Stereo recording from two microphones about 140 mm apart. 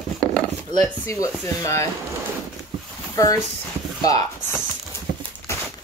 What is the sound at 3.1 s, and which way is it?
Speech, 25° left (ahead or behind).